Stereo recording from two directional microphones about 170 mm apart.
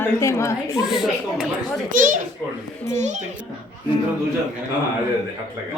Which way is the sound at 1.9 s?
50° right (ahead or behind).